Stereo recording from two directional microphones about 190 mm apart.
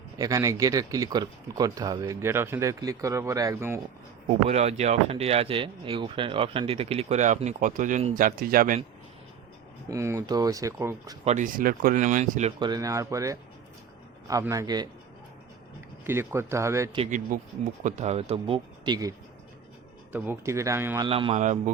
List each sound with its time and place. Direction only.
0.2 s speech: 15° right (ahead or behind)
4.3 s speech: 35° right (ahead or behind)
9.9 s speech: 15° right (ahead or behind)
11.3 s speech: 45° right (ahead or behind)
12.5 s speech: 20° right (ahead or behind)
16.0 s speech: 15° right (ahead or behind)
17.0 s speech: 40° right (ahead or behind); by 19.1 s 20° right (ahead or behind)
20.1 s speech: 10° right (ahead or behind)
21.1 s speech: 30° right (ahead or behind)